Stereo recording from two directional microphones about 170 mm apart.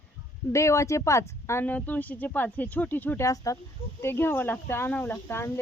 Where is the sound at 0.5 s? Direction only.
15° left (ahead or behind).